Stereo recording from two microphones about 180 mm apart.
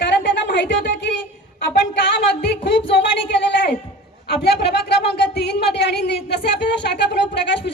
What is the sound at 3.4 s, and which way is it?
Speech, 75° left (ahead or behind).